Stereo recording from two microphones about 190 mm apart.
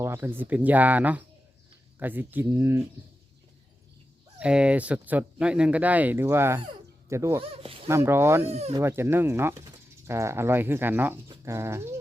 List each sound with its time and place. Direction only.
0.0 s speech: 15° right (ahead or behind)
4.4 s speech: 5° right (ahead or behind)
7.4 s speech: 30° right (ahead or behind)
7.9 s speech: 15° right (ahead or behind)
8.4 s speech: 35° right (ahead or behind)
8.7 s speech: 15° right (ahead or behind)